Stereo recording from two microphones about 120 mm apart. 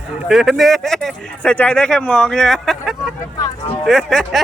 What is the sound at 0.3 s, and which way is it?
Speech, centre (ahead or behind).